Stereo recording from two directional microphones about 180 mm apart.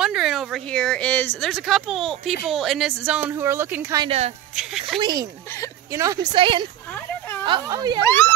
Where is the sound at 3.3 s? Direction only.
15° right (ahead or behind).